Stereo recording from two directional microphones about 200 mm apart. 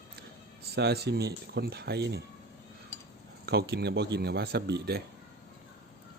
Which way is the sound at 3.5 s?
55° right (ahead or behind).